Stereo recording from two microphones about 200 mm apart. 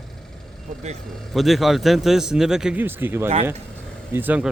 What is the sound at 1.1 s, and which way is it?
A man's voice, centre (ahead or behind).